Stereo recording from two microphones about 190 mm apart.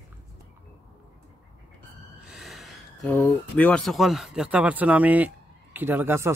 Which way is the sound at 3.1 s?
5° left (ahead or behind).